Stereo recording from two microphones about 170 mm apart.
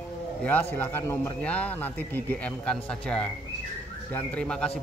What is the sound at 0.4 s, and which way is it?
A man's voice, 10° left (ahead or behind).